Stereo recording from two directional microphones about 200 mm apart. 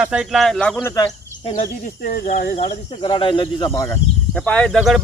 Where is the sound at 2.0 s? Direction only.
40° left (ahead or behind); by 5.0 s centre (ahead or behind).